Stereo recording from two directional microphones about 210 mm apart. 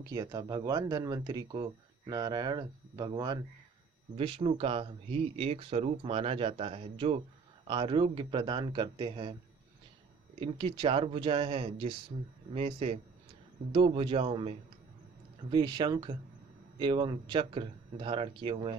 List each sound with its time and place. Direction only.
0.0 s speech: 15° right (ahead or behind)
10.4 s speech: 25° right (ahead or behind)
15.5 s speech: 20° right (ahead or behind)